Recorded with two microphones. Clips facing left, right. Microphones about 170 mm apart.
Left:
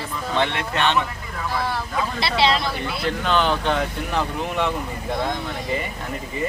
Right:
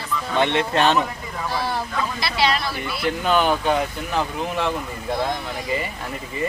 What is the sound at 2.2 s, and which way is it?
Speech, 25° left (ahead or behind).